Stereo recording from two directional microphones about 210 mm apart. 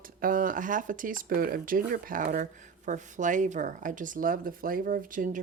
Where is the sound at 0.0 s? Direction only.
40° right (ahead or behind).